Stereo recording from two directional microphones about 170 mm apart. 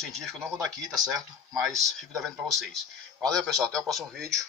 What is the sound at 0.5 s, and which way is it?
Speech, 20° right (ahead or behind).